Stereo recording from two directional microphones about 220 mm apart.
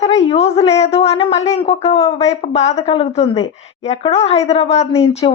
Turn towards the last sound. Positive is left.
turn(degrees=25)  # may be behind; listen again after turning